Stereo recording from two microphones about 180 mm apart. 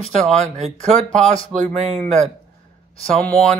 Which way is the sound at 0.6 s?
40° right (ahead or behind).